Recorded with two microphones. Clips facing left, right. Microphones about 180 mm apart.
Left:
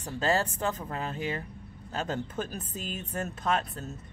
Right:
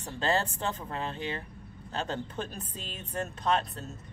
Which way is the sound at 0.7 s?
10° left (ahead or behind).